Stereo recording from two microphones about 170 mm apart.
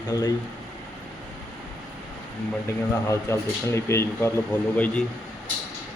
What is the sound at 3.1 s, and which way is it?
A man's voice, 15° left (ahead or behind).